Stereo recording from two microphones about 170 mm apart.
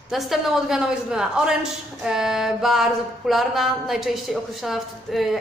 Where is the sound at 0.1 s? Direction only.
Centre (ahead or behind).